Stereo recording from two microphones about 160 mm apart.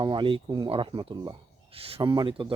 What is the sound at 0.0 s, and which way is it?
Speech, 30° right (ahead or behind).